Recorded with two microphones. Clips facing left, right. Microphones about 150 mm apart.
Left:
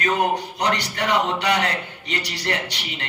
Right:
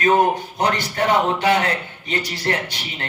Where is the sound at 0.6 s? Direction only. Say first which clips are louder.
Right 5 dB; 45° right (ahead or behind).